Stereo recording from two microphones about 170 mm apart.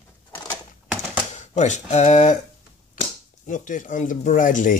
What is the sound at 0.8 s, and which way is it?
Typewriter, 5° right (ahead or behind).